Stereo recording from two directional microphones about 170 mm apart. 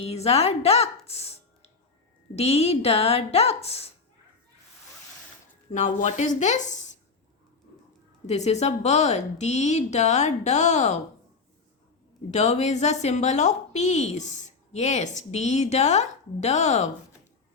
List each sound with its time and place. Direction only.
0.0 s a woman's voice: 35° left (ahead or behind)
5.7 s speech: 45° left (ahead or behind)
8.3 s a woman's voice: 40° left (ahead or behind)
12.3 s a woman's voice: 40° left (ahead or behind)